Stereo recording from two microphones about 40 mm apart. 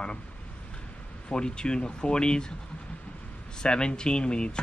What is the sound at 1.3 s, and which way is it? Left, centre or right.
Speech, left.